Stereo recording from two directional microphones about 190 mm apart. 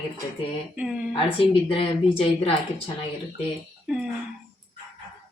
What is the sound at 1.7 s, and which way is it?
Speech, 30° left (ahead or behind).